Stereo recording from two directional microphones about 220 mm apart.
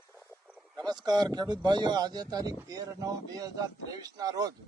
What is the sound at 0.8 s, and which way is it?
Speech, 20° right (ahead or behind).